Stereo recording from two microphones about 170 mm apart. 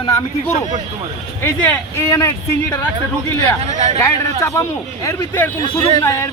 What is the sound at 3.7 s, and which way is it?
Speech, 45° right (ahead or behind).